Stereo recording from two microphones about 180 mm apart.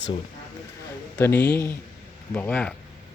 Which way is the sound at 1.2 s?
10° left (ahead or behind).